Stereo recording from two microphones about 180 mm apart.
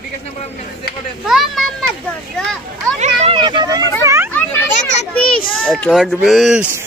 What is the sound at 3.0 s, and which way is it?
Vehicle, 30° right (ahead or behind).